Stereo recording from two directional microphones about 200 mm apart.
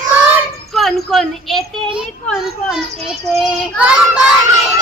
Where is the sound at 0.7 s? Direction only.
Centre (ahead or behind).